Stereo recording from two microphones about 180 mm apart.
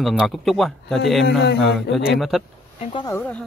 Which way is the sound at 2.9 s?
20° left (ahead or behind).